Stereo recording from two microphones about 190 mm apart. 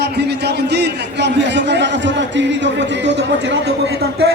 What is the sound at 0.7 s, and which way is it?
A man's voice, 65° right (ahead or behind).